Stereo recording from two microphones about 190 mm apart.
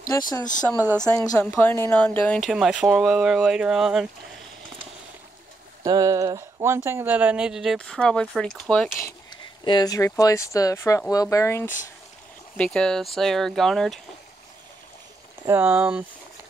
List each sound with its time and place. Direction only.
0.1 s a woman's voice: 15° left (ahead or behind)
1.4 s speech: 10° left (ahead or behind)
2.5 s speech: 5° right (ahead or behind)
5.9 s speech: 20° right (ahead or behind); by 8.9 s centre (ahead or behind)
9.0 s speech: 20° left (ahead or behind)
12.5 s speech: 5° left (ahead or behind)
15.4 s speech: 10° right (ahead or behind)